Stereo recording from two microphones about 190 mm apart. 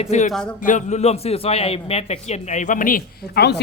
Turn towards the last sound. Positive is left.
turn(degrees=60)  # may be behind; listen again after turning